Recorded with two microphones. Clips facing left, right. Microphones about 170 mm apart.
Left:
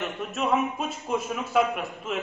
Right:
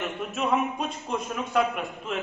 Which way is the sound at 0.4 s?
Centre (ahead or behind).